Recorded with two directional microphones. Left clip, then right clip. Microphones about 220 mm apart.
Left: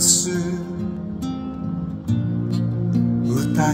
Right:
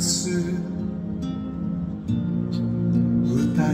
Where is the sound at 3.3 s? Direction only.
25° left (ahead or behind).